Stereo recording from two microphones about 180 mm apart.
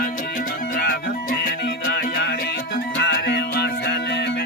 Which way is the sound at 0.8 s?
55° left (ahead or behind).